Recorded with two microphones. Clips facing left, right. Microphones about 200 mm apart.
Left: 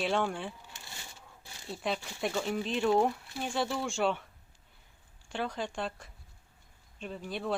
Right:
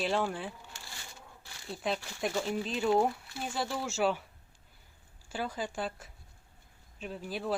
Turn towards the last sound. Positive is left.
turn(degrees=0)  # may be behind; listen again after turning